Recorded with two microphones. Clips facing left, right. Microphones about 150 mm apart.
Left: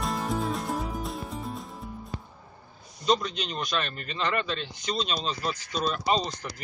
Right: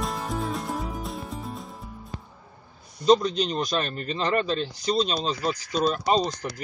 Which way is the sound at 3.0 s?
35° right (ahead or behind).